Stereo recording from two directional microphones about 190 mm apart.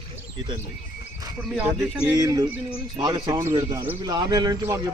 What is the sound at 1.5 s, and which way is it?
Speech, 10° right (ahead or behind).